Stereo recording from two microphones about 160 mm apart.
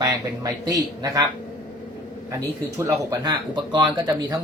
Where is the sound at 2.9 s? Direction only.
25° right (ahead or behind).